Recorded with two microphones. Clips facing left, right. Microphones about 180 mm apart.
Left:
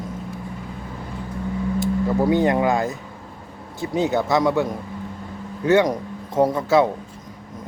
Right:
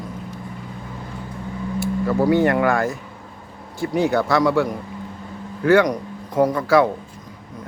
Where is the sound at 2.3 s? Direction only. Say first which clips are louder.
Right 2 dB; 20° left (ahead or behind).